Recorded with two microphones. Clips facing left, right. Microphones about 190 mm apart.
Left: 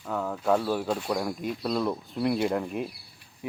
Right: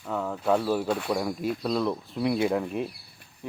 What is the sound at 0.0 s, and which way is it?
Speech, centre (ahead or behind).